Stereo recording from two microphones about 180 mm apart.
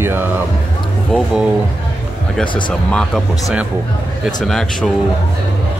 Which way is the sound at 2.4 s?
25° left (ahead or behind).